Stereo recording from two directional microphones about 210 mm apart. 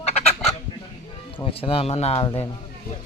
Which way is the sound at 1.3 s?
25° left (ahead or behind).